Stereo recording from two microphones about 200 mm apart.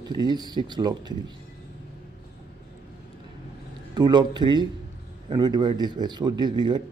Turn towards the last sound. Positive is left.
turn(degrees=-20)  # may be behind; listen again after turning